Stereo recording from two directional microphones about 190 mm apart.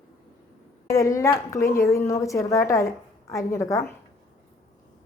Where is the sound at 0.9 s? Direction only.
15° left (ahead or behind).